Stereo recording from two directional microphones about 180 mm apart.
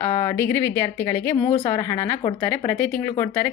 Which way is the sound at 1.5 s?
25° left (ahead or behind).